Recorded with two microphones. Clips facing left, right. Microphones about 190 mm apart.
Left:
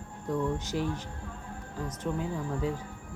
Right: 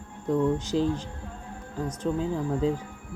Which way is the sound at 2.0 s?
25° right (ahead or behind).